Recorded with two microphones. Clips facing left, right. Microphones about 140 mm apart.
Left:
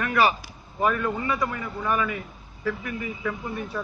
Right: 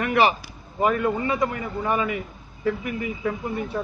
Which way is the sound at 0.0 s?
25° right (ahead or behind).